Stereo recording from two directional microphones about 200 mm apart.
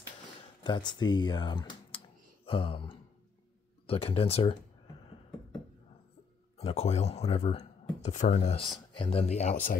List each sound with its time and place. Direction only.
0.7 s speech: 20° left (ahead or behind)
6.6 s speech: 30° left (ahead or behind)